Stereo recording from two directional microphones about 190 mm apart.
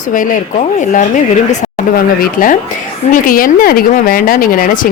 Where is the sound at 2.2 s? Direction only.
45° left (ahead or behind).